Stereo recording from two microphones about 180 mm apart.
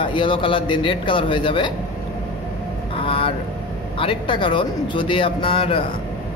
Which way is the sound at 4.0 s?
30° left (ahead or behind).